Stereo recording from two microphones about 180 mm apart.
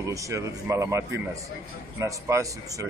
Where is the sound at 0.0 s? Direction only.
15° right (ahead or behind).